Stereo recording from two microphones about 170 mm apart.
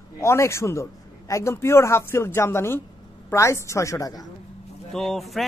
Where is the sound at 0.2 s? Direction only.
15° left (ahead or behind).